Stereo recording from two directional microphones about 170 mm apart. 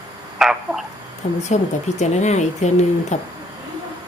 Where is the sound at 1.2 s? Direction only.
40° left (ahead or behind).